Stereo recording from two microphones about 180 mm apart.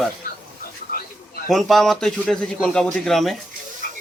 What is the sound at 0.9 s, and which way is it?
Bird, 50° left (ahead or behind).